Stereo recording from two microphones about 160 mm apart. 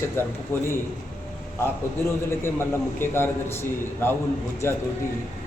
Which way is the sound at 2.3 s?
15° left (ahead or behind).